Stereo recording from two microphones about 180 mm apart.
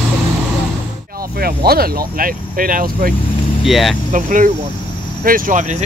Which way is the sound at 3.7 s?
Centre (ahead or behind).